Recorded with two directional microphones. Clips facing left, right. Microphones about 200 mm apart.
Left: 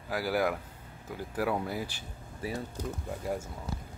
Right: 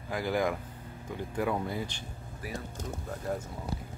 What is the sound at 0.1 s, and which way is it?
Speech, 5° left (ahead or behind).